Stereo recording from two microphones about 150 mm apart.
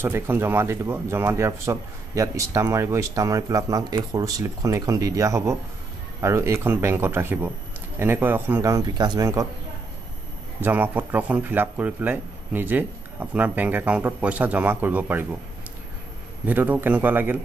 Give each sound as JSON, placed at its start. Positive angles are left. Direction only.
{"t": 0.0, "sound": "speech", "side_deg": -15}
{"t": 10.6, "sound": "speech", "side_deg": -10}
{"t": 16.4, "sound": "speech", "side_deg": -10}